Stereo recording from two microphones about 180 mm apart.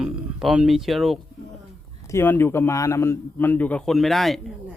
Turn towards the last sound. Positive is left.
turn(degrees=0)  # may be behind; listen again after turning